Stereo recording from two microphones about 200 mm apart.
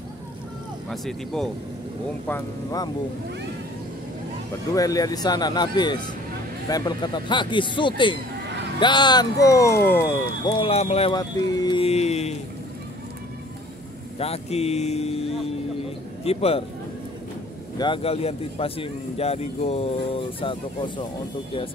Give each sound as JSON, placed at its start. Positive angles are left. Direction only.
{"t": 0.8, "sound": "speech", "side_deg": 0}
{"t": 2.2, "sound": "speech", "side_deg": 15}
{"t": 4.7, "sound": "speech", "side_deg": 15}
{"t": 10.4, "sound": "speech", "side_deg": 30}
{"t": 11.1, "sound": "speech", "side_deg": 20}
{"t": 14.1, "sound": "speech", "side_deg": 30}
{"t": 17.7, "sound": "speech", "side_deg": 25}